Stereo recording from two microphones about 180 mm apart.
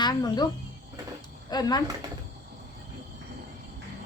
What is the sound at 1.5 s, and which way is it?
Speech, 20° left (ahead or behind).